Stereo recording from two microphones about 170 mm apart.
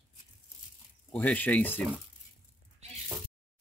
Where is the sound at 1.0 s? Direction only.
10° left (ahead or behind).